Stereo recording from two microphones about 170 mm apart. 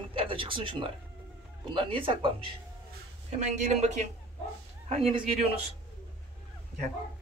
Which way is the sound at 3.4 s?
45° right (ahead or behind).